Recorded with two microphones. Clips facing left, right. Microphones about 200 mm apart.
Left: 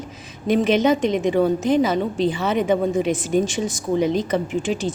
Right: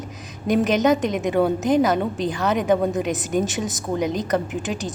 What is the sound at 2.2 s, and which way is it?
Speech, centre (ahead or behind).